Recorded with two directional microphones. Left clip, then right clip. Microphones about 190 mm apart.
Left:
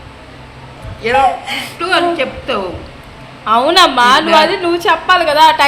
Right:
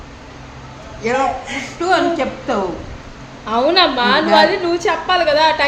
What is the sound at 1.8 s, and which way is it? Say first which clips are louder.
Speech: left 2 dB; 35° right (ahead or behind).